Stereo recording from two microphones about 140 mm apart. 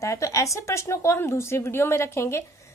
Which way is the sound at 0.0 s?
20° left (ahead or behind).